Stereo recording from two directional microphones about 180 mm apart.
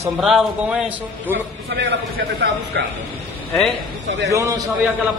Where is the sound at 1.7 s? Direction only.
70° right (ahead or behind).